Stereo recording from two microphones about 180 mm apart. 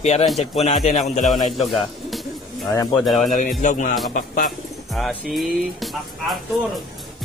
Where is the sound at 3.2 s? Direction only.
45° left (ahead or behind).